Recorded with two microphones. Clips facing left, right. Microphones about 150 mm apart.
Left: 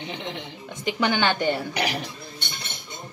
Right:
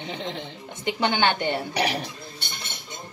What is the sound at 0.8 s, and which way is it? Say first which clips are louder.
Speech: even; 25° right (ahead or behind).